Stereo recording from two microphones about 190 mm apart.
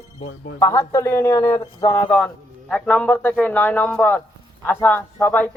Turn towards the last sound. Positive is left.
turn(degrees=10)  # may be behind; listen again after turning